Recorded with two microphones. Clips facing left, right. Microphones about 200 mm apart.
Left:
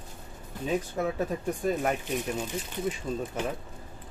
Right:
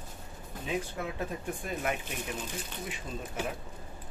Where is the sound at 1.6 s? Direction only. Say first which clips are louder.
Left 7 dB; 40° left (ahead or behind).